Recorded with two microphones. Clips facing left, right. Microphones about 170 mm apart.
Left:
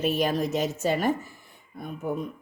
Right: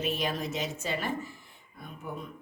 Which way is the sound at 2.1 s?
45° left (ahead or behind).